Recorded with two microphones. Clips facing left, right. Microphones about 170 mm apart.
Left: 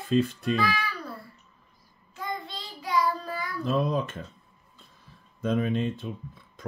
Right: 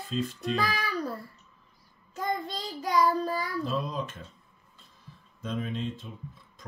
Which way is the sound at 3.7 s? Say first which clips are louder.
Left 6 dB; 60° left (ahead or behind).